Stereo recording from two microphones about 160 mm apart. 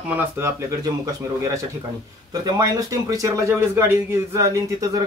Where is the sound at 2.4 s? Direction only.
20° right (ahead or behind).